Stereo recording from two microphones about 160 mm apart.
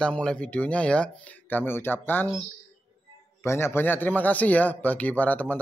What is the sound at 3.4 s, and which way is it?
Music, 15° left (ahead or behind).